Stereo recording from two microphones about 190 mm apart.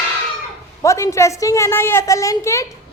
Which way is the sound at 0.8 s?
15° left (ahead or behind).